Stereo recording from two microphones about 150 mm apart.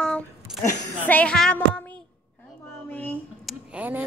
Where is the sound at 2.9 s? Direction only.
10° left (ahead or behind).